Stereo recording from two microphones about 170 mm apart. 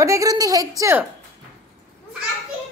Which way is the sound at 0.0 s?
20° right (ahead or behind).